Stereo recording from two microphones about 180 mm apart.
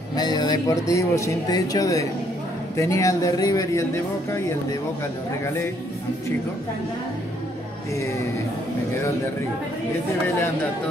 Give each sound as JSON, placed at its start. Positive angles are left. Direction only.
{"t": 0.1, "sound": "speech", "side_deg": 20}
{"t": 7.9, "sound": "speech", "side_deg": 15}